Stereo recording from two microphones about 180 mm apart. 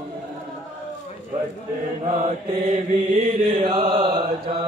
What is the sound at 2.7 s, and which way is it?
Mantra, 40° right (ahead or behind).